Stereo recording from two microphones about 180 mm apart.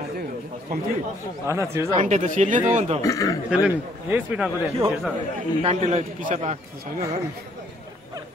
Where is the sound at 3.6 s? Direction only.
5° right (ahead or behind).